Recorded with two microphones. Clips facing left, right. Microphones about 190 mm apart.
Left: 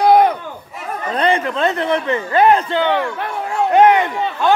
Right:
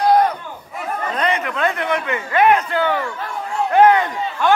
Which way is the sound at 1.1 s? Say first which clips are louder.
Left 6 dB; 30° left (ahead or behind).